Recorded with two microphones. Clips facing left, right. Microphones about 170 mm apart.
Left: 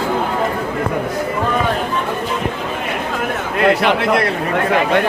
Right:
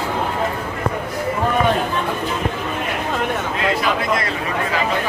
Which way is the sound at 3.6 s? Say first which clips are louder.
Left 8 dB; 65° left (ahead or behind).